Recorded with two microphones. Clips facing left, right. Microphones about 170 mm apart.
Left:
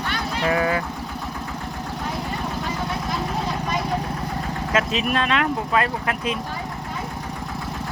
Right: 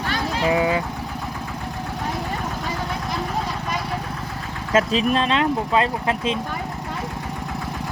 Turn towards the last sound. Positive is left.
turn(degrees=-25)  # may be behind; listen again after turning